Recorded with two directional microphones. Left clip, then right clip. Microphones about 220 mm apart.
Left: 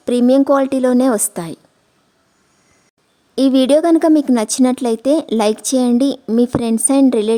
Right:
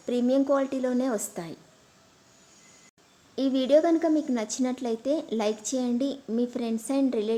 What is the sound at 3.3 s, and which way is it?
A woman's voice, 50° left (ahead or behind).